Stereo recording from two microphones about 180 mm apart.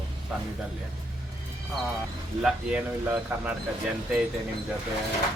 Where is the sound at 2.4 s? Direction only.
5° right (ahead or behind).